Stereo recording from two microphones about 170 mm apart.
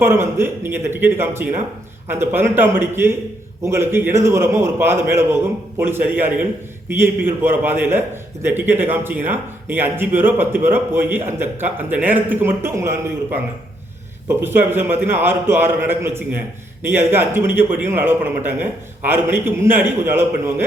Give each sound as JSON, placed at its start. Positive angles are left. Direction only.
{"t": 0.0, "sound": "a man's voice", "side_deg": -15}